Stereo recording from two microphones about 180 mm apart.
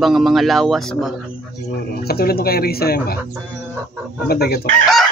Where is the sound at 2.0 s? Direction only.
60° left (ahead or behind).